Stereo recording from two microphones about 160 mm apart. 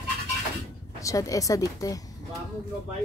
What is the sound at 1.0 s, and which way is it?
Speech, 20° left (ahead or behind).